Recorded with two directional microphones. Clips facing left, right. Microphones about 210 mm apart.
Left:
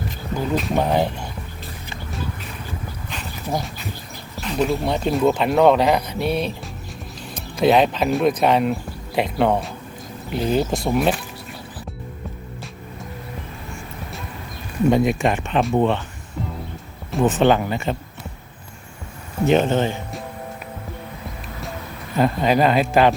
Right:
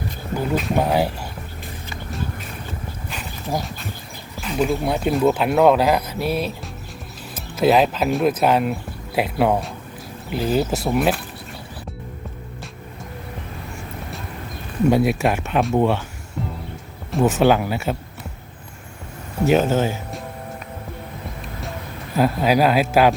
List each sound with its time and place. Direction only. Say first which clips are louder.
0.5 s speech: even; 5° right (ahead or behind)
3.1 s dog: even; 5° right (ahead or behind)
4.4 s speech: even; 5° right (ahead or behind)
14.8 s speech: even; 5° right (ahead or behind)
17.1 s speech: even; 5° right (ahead or behind)
19.5 s speech: even; 5° right (ahead or behind)
22.1 s speech: even; 5° right (ahead or behind)